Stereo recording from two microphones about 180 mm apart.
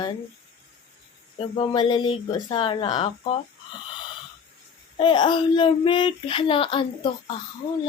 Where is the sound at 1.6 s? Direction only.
25° left (ahead or behind).